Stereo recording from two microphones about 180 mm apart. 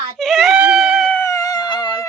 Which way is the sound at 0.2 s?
Centre (ahead or behind).